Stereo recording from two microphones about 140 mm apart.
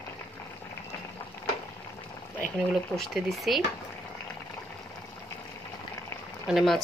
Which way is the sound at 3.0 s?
Centre (ahead or behind).